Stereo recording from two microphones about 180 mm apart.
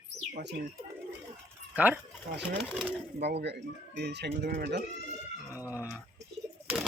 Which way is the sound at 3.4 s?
70° right (ahead or behind).